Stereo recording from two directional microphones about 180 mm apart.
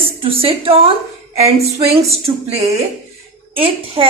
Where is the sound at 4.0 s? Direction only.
30° right (ahead or behind).